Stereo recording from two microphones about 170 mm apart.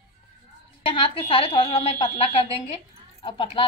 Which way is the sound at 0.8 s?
30° left (ahead or behind).